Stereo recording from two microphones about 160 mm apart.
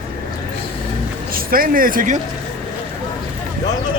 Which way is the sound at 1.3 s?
65° right (ahead or behind).